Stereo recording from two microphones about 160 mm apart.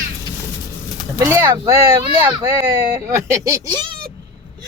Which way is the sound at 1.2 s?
15° right (ahead or behind).